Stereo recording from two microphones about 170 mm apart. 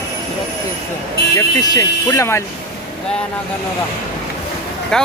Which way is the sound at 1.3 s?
20° left (ahead or behind).